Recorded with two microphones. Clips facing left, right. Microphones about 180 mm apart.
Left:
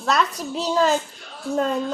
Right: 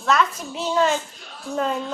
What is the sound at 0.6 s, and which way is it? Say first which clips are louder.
Speech: left 1 dB; 35° left (ahead or behind).